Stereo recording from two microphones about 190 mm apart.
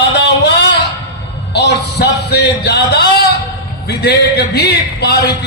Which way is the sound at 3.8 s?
55° left (ahead or behind).